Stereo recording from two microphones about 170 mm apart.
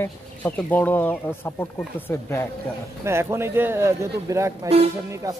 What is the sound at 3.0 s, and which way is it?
A man's voice, 15° right (ahead or behind).